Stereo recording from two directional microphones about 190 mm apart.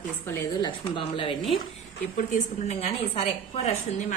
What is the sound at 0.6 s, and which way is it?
A woman's voice, 25° left (ahead or behind).